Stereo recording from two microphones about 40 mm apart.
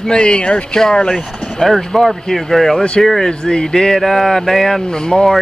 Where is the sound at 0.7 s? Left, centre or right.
Centre.